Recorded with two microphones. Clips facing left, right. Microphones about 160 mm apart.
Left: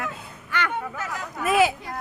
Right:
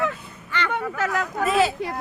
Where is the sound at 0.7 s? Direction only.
80° right.